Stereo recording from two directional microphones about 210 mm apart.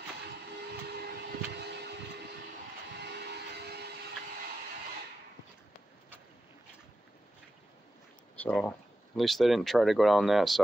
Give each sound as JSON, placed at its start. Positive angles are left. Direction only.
{"t": 1.6, "sound": "vehicle", "side_deg": -55}
{"t": 8.4, "sound": "speech", "side_deg": 5}